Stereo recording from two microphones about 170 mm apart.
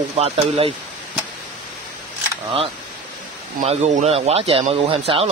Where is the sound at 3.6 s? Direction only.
40° right (ahead or behind).